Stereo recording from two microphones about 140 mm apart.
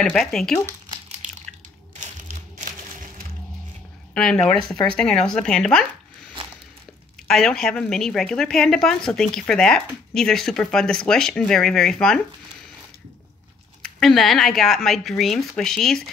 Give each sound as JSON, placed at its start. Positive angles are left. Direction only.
{"t": 0.0, "sound": "a woman's voice", "side_deg": 5}
{"t": 1.2, "sound": "a sound", "side_deg": -65}
{"t": 4.1, "sound": "a woman's voice", "side_deg": 5}
{"t": 7.2, "sound": "a woman's voice", "side_deg": 5}
{"t": 13.9, "sound": "a woman's voice", "side_deg": 0}